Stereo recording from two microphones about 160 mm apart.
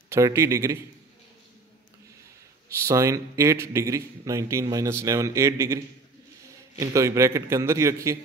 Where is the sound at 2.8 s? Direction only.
20° right (ahead or behind).